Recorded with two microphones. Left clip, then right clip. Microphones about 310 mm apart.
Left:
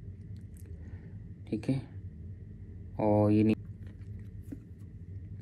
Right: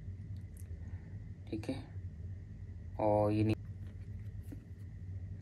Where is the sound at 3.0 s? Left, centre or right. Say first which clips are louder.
Left 4 dB; left.